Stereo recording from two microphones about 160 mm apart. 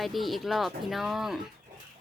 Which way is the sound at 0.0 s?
Centre (ahead or behind).